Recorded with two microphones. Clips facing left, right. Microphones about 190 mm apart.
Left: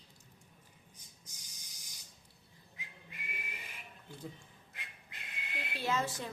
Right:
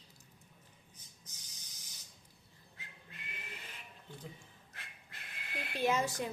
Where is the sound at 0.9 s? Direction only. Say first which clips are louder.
Even; 10° left (ahead or behind).